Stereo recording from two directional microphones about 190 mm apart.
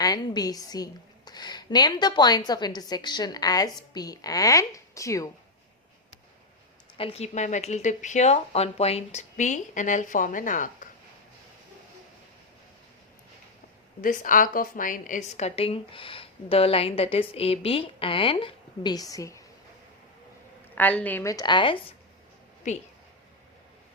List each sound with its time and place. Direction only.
0.0 s a woman's voice: 20° left (ahead or behind)
6.9 s a woman's voice: 30° left (ahead or behind)
14.0 s a woman's voice: 45° left (ahead or behind); by 19.4 s 15° left (ahead or behind)
20.7 s a woman's voice: 10° left (ahead or behind); by 21.9 s 25° left (ahead or behind)
22.6 s a woman's voice: 40° left (ahead or behind)